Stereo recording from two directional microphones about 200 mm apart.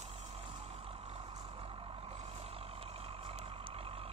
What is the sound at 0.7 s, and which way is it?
Vehicle, 30° right (ahead or behind).